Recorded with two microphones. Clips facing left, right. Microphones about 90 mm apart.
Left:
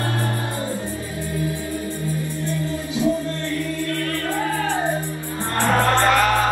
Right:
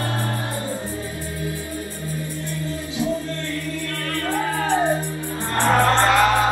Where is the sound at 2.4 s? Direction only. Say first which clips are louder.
Left 3 dB; 20° left (ahead or behind).